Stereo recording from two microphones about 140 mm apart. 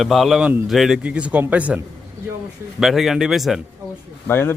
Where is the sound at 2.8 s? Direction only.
Centre (ahead or behind).